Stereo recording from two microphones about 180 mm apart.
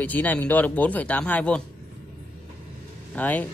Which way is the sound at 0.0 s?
10° left (ahead or behind).